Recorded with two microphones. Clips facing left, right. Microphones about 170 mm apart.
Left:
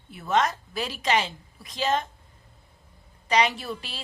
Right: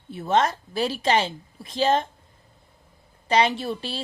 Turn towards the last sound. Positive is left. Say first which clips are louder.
# right 5 dB
turn(degrees=-30)  # may be behind; listen again after turning